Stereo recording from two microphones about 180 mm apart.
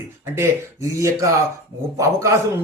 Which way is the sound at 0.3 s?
15° right (ahead or behind).